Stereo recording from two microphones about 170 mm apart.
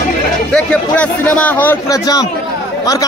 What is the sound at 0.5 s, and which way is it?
Speech, 5° left (ahead or behind).